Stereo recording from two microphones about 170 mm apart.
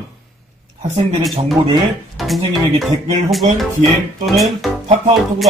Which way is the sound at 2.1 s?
Centre (ahead or behind).